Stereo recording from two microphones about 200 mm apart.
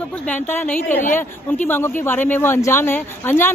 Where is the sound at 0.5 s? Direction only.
10° left (ahead or behind).